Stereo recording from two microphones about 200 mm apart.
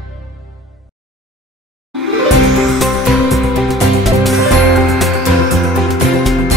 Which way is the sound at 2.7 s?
Centre (ahead or behind).